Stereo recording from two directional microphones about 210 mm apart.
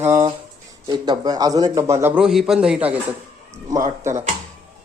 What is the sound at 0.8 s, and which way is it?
A man's voice, 20° right (ahead or behind).